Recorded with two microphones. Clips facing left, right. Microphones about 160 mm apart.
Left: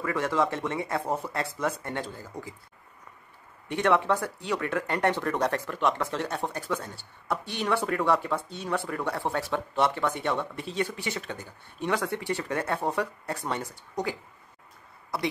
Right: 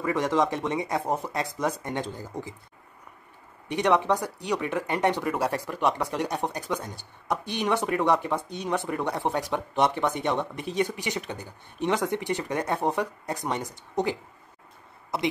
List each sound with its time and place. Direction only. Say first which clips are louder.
0.0 s speech: right 2 dB; 20° right (ahead or behind)
3.6 s speech: right 1 dB; 15° right (ahead or behind)